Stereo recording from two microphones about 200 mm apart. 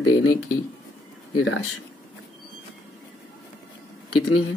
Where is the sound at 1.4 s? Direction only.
75° left (ahead or behind).